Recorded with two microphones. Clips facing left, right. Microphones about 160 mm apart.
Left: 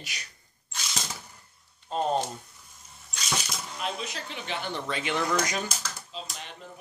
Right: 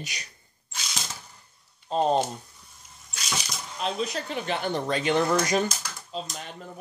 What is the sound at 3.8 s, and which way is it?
Speech, 35° right (ahead or behind).